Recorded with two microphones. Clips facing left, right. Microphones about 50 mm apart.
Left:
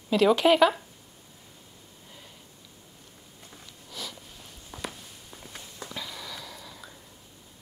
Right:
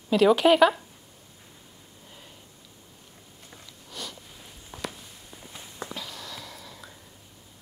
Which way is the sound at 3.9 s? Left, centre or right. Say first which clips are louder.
Even; centre.